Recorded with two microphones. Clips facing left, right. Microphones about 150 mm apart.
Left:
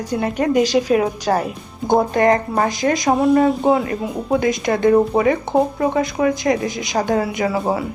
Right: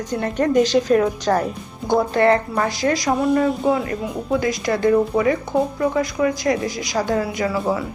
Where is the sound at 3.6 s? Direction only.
35° left (ahead or behind).